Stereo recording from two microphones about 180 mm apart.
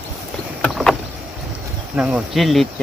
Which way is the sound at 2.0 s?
5° right (ahead or behind).